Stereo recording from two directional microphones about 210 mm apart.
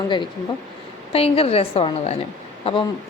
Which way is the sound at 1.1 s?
30° left (ahead or behind).